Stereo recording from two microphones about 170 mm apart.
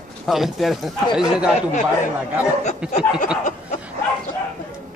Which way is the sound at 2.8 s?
5° right (ahead or behind).